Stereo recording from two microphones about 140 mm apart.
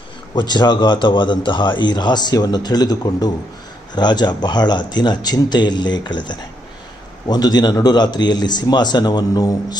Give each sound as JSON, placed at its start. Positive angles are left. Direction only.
{"t": 0.3, "sound": "speech", "side_deg": 30}